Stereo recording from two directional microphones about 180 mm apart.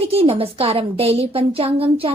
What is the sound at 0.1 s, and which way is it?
A woman's voice, 30° right (ahead or behind).